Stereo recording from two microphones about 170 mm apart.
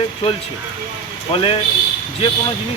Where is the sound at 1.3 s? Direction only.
30° left (ahead or behind).